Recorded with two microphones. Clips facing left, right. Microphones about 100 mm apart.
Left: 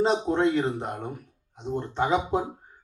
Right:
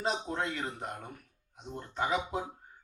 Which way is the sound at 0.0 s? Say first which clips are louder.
Left 11 dB; 30° left (ahead or behind).